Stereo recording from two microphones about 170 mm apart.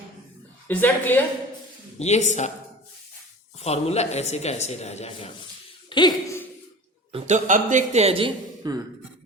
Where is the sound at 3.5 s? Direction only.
40° left (ahead or behind).